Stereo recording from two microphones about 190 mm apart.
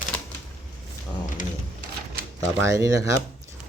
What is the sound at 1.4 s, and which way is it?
Sewing machine, 40° left (ahead or behind).